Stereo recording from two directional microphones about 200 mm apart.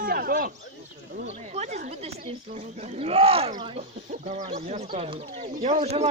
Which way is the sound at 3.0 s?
30° right (ahead or behind).